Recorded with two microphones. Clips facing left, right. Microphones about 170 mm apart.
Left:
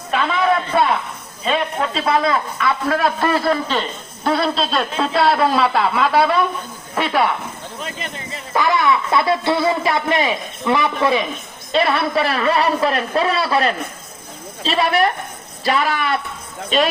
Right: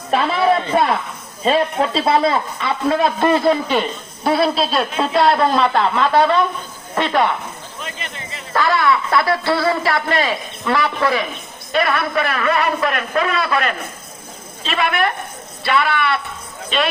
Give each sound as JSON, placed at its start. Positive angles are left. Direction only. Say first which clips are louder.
{"t": 0.1, "sound": "a sound", "louder": "right 2 dB", "side_deg": -35}
{"t": 1.5, "sound": "a man's voice", "louder": "right 4 dB", "side_deg": -35}
{"t": 8.5, "sound": "a man's voice", "louder": "even", "side_deg": 20}